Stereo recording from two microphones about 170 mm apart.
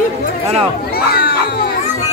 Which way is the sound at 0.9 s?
70° left (ahead or behind).